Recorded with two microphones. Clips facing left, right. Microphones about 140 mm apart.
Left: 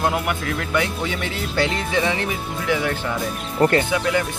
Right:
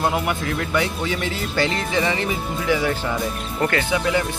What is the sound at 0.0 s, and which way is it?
Speech, centre (ahead or behind).